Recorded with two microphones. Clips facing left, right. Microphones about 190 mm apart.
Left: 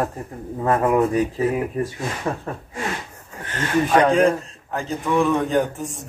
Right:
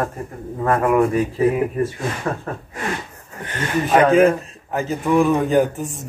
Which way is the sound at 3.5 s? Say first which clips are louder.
Right 1 dB; 10° right (ahead or behind).